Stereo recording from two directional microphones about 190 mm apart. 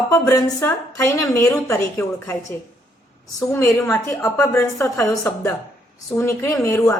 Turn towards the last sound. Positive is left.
turn(degrees=15)  # may be behind; listen again after turning